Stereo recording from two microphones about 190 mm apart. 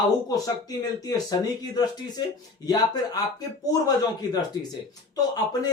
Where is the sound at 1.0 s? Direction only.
20° left (ahead or behind).